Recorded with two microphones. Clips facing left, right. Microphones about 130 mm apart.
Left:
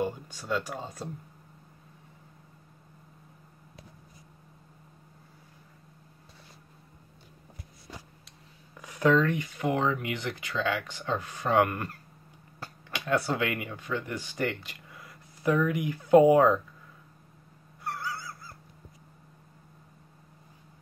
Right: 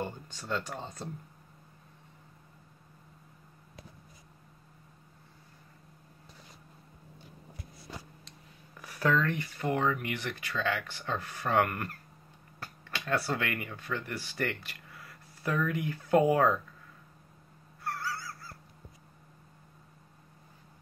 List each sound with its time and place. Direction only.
0.0 s speech: 10° left (ahead or behind)
8.8 s speech: 20° left (ahead or behind)
17.8 s crow: 20° left (ahead or behind)